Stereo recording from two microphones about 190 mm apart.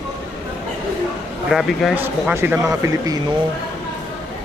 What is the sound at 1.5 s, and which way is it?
Speech, centre (ahead or behind).